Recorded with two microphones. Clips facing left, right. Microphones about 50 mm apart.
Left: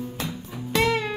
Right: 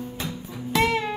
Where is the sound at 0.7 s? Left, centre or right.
Centre.